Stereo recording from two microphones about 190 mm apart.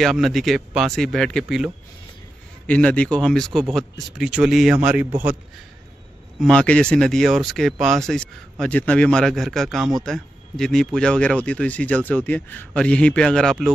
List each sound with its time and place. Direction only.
0.0 s a man's voice: centre (ahead or behind)
6.4 s a man's voice: 5° left (ahead or behind)